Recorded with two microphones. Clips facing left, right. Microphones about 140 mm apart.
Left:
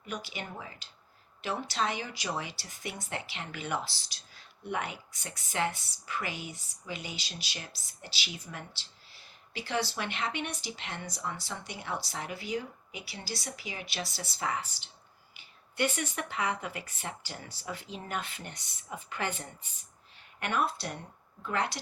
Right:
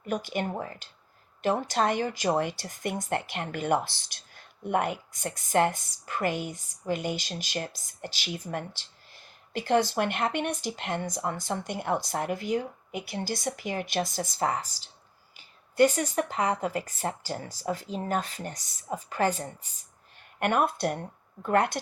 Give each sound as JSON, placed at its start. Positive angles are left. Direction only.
{"t": 0.0, "sound": "speech", "side_deg": -50}
{"t": 20.4, "sound": "speech", "side_deg": -55}